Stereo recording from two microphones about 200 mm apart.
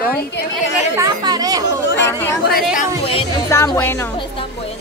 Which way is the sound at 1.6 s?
60° left (ahead or behind).